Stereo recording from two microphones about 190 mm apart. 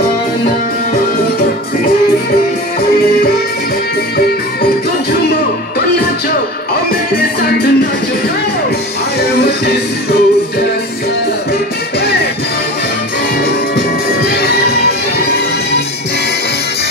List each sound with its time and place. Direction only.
9.2 s music: 55° left (ahead or behind)
13.7 s music: 55° left (ahead or behind)